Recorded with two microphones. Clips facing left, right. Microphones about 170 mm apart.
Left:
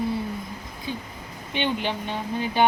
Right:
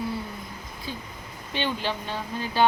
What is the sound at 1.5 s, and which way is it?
Speech, 20° left (ahead or behind).